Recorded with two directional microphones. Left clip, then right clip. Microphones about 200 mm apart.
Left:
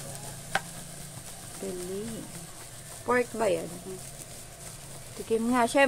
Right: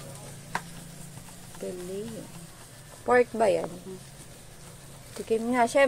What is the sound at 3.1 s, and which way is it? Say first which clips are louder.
Speech: right 4 dB; 20° right (ahead or behind).